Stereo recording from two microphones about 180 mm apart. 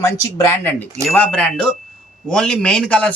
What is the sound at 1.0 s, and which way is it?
A man's voice, 5° left (ahead or behind).